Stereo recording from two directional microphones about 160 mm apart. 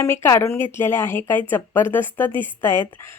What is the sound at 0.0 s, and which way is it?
A woman's voice, 15° left (ahead or behind).